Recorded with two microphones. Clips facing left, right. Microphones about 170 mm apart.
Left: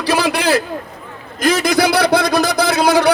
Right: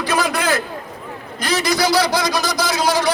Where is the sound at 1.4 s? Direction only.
50° left (ahead or behind).